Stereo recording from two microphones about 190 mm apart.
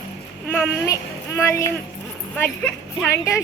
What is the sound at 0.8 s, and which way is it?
Speech, 15° left (ahead or behind).